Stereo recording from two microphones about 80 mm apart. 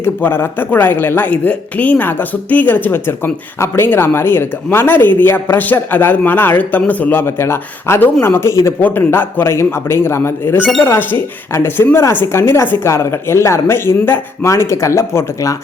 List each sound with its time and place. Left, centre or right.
0.0 s speech: left